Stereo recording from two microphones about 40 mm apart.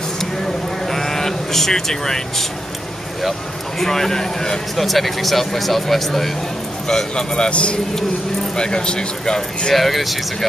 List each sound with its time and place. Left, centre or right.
0.8 s sheep: centre
3.8 s a man's voice: centre
4.7 s speech: centre
6.9 s speech: centre
9.8 s speech: centre